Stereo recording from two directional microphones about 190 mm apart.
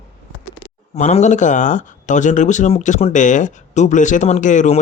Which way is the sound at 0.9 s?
40° left (ahead or behind).